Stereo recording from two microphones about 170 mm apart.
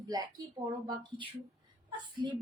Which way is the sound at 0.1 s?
20° right (ahead or behind).